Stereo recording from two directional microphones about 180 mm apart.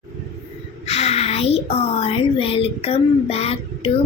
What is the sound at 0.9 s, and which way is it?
Speech, 35° left (ahead or behind).